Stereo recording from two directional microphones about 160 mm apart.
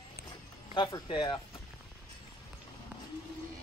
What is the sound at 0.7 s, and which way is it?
Speech, 30° left (ahead or behind).